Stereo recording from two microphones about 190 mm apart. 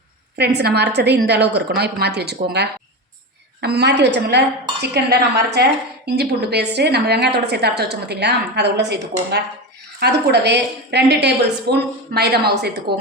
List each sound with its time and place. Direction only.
0.3 s a woman's voice: 60° right (ahead or behind)
10.0 s a woman's voice: 60° right (ahead or behind)